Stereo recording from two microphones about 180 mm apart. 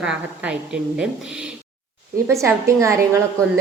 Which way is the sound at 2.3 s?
15° right (ahead or behind).